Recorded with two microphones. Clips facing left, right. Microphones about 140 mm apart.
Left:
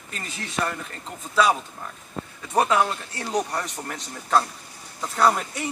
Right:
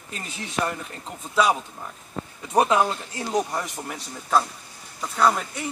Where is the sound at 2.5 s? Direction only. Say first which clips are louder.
Right 1 dB; 15° right (ahead or behind).